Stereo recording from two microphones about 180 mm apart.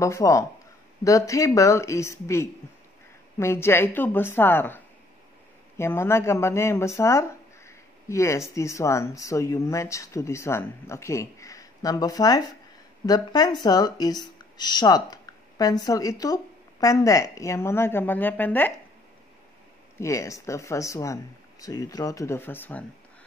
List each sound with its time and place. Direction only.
0.0 s speech: 15° left (ahead or behind)
20.0 s speech: 15° left (ahead or behind)